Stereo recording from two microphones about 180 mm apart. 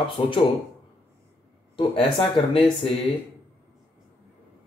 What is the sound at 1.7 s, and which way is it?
Speech, 30° left (ahead or behind).